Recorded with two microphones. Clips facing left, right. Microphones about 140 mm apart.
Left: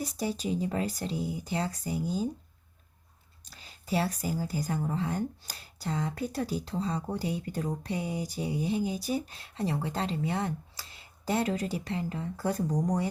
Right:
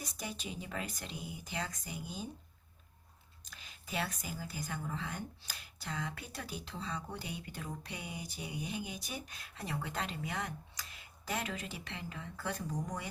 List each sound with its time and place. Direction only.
0.0 s speech: 35° left (ahead or behind)
3.5 s speech: 35° left (ahead or behind)